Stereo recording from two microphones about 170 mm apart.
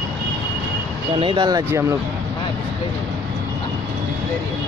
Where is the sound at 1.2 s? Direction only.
30° right (ahead or behind).